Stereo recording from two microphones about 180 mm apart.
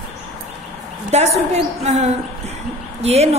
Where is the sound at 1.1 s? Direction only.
35° right (ahead or behind).